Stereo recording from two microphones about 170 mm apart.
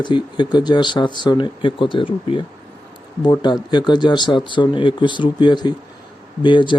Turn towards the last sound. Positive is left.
turn(degrees=30)  # may be behind; listen again after turning